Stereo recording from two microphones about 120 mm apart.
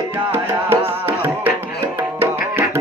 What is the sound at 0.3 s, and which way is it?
Music, 15° right (ahead or behind).